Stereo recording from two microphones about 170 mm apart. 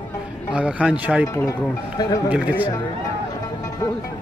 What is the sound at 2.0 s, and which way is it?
Speech, 20° left (ahead or behind).